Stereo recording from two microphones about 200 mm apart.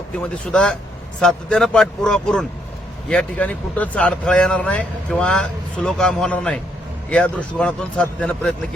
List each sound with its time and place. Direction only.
0.5 s speech: 5° left (ahead or behind)